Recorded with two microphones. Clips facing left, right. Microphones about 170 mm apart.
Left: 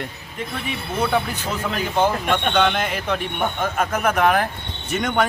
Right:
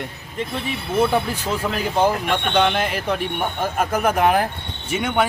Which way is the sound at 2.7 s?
5° right (ahead or behind).